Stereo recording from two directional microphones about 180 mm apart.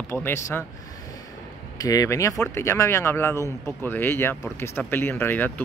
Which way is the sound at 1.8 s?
20° left (ahead or behind).